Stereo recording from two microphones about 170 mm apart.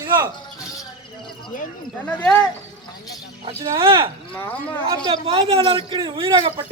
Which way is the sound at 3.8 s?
30° right (ahead or behind).